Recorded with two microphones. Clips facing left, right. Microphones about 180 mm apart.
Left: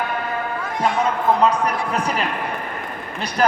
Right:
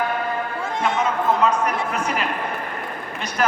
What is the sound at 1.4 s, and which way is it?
Speech, 35° left (ahead or behind).